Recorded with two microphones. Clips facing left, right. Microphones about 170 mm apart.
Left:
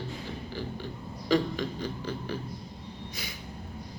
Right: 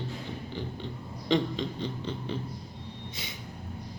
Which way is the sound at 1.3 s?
25° right (ahead or behind).